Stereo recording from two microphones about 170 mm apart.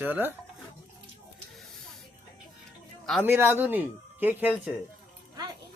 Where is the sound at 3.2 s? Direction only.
15° right (ahead or behind).